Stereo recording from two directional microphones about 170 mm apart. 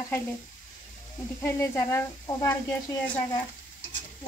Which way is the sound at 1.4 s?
15° left (ahead or behind).